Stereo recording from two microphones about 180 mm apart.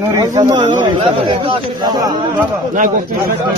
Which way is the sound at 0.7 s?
45° right (ahead or behind).